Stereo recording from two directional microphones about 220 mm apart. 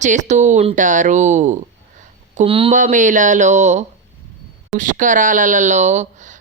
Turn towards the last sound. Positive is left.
turn(degrees=-35)  # may be behind; listen again after turning